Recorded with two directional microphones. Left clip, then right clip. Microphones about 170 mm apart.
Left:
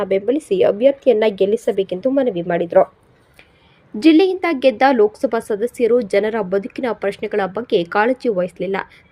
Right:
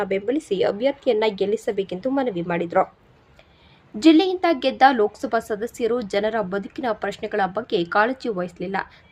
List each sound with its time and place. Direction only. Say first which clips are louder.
0.0 s a woman's voice: left 5 dB; 10° left (ahead or behind)
4.0 s a woman's voice: left 3 dB; 15° left (ahead or behind)